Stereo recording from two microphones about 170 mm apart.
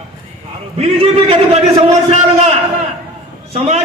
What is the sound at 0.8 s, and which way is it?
Speech, 35° right (ahead or behind).